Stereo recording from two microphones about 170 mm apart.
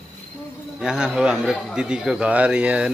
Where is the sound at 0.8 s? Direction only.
5° right (ahead or behind).